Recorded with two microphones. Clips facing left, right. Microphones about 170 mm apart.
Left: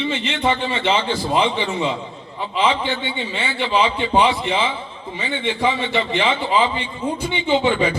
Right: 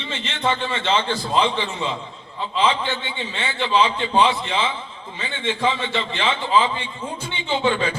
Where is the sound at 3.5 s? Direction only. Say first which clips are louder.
Even; 15° left (ahead or behind).